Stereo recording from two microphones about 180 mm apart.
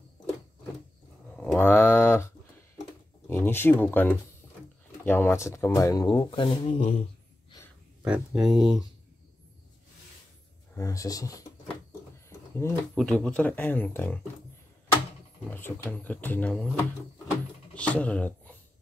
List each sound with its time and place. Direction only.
1.3 s a sound: 5° left (ahead or behind)
3.3 s speech: 15° left (ahead or behind); by 7.0 s 30° left (ahead or behind)
8.0 s speech: 5° right (ahead or behind)
10.8 s speech: 20° left (ahead or behind)
12.3 s a sound: 15° left (ahead or behind)
12.9 s speech: 5° left (ahead or behind)
15.5 s speech: 10° left (ahead or behind)
17.7 s speech: 5° left (ahead or behind)